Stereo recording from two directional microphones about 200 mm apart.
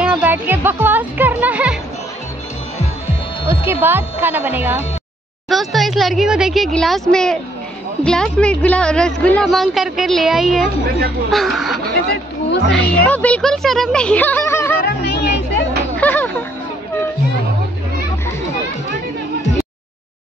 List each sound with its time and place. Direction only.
0.0 s speech: 10° right (ahead or behind)
3.4 s a woman's voice: 10° right (ahead or behind)
12.1 s chatter: 55° left (ahead or behind)
12.7 s speech: 5° left (ahead or behind)
14.9 s music: 55° left (ahead or behind)
16.0 s music: 10° left (ahead or behind)